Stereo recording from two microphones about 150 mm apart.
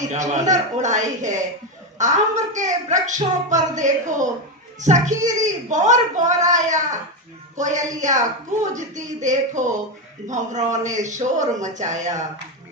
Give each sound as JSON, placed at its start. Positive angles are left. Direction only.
{"t": 0.1, "sound": "a woman's voice", "side_deg": -50}